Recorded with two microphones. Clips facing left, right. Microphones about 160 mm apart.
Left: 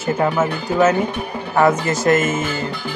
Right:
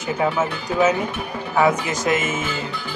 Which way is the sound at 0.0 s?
Centre (ahead or behind).